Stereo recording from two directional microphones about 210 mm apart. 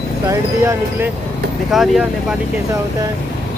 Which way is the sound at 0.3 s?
15° right (ahead or behind).